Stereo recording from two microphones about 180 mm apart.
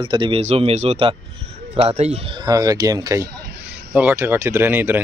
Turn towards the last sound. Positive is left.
turn(degrees=-10)  # may be behind; listen again after turning